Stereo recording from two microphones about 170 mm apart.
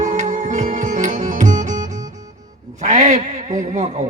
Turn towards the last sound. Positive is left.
turn(degrees=-45)  # may be behind; listen again after turning